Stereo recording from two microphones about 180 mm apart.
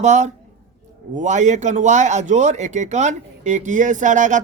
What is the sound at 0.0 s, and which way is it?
A man's voice, 40° right (ahead or behind).